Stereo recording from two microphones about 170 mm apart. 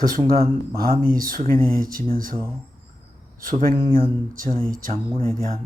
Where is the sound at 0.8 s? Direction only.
60° right (ahead or behind).